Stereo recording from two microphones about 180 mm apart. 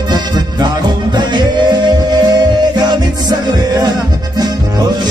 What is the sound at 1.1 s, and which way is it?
Music, 25° right (ahead or behind).